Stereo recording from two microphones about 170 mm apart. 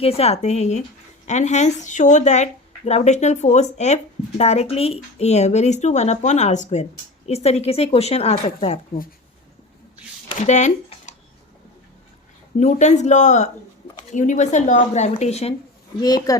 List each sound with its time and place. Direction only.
0.0 s a woman's voice: 35° left (ahead or behind)
10.3 s speech: 45° left (ahead or behind)
12.5 s a woman's voice: 45° left (ahead or behind)
16.0 s speech: 25° left (ahead or behind)